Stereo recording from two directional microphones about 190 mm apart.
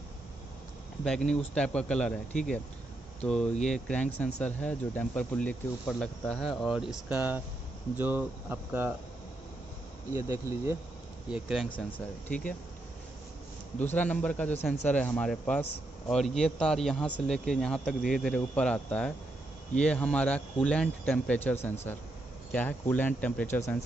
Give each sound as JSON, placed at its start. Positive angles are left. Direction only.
{"t": 1.0, "sound": "speech", "side_deg": 5}
{"t": 3.6, "sound": "speech", "side_deg": 5}
{"t": 10.1, "sound": "speech", "side_deg": -15}
{"t": 11.2, "sound": "speech", "side_deg": -5}
{"t": 13.7, "sound": "speech", "side_deg": 10}